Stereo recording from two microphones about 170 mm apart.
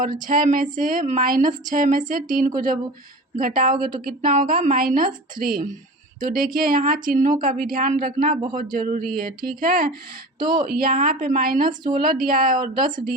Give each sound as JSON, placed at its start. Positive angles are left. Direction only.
{"t": 0.3, "sound": "speech", "side_deg": -55}
{"t": 10.4, "sound": "speech", "side_deg": -25}
{"t": 10.7, "sound": "speech", "side_deg": -60}